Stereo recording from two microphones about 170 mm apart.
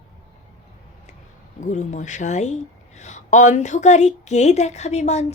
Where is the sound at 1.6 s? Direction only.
45° left (ahead or behind).